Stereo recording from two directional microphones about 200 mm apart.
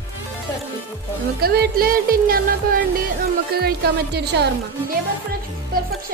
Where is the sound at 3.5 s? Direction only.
50° right (ahead or behind).